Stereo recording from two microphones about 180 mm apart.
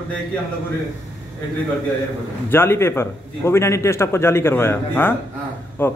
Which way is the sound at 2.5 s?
15° left (ahead or behind).